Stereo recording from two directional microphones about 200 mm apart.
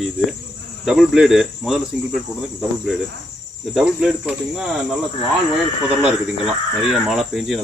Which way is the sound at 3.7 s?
5° right (ahead or behind).